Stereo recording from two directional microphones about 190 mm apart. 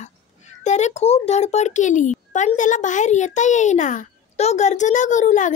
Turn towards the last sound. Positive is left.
turn(degrees=40)  # may be behind; listen again after turning